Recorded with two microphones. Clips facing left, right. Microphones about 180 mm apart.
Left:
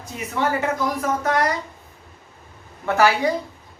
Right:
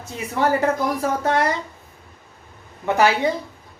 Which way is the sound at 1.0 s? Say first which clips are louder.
Right 1 dB; 30° right (ahead or behind).